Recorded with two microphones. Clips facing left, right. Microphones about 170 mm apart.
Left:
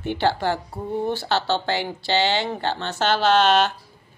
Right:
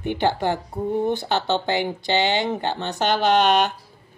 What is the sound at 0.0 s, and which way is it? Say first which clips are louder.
A woman's voice: even; 15° right (ahead or behind).